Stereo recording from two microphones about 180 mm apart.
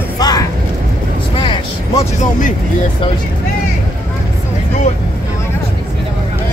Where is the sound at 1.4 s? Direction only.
30° left (ahead or behind).